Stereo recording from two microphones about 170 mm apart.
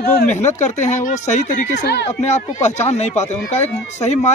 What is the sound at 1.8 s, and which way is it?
Speech, 75° left (ahead or behind).